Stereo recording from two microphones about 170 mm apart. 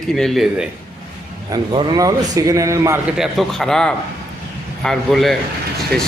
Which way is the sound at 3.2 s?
Centre (ahead or behind).